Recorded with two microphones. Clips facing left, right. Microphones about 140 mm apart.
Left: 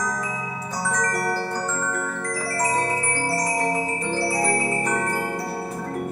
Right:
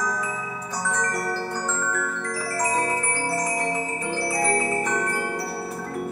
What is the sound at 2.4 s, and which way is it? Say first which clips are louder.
Glockenspiel: left 1 dB; 10° right (ahead or behind).